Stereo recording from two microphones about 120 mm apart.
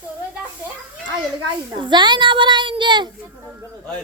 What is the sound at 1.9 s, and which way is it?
Speech, 40° right (ahead or behind).